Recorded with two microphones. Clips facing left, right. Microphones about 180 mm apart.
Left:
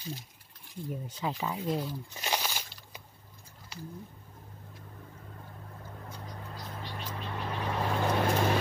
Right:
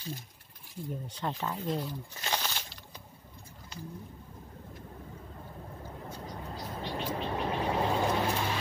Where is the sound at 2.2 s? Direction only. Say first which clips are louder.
Left 1 dB; 10° left (ahead or behind).